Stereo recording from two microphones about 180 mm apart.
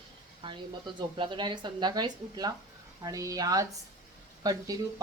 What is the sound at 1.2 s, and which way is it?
Speech, 25° right (ahead or behind).